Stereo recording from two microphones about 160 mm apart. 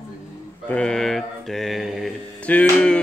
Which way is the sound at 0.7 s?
5° left (ahead or behind).